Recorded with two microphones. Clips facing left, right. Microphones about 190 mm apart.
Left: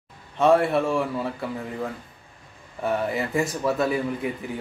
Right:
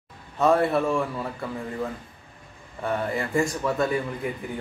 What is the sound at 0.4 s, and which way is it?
Speech, centre (ahead or behind).